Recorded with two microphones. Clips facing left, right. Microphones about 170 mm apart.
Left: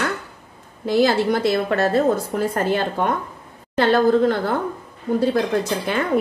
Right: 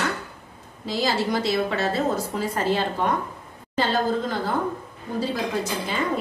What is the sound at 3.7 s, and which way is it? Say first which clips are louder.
Speech: left 7 dB; 65° left (ahead or behind).